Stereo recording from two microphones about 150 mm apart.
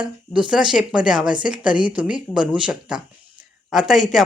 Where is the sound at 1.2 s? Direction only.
30° right (ahead or behind).